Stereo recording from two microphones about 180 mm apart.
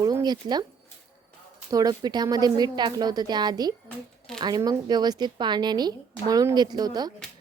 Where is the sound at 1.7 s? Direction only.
20° right (ahead or behind).